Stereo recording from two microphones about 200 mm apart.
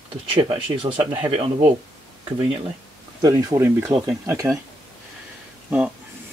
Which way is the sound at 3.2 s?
20° right (ahead or behind).